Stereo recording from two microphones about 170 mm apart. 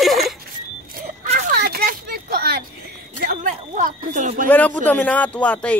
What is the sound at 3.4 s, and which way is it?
Speech, 45° right (ahead or behind).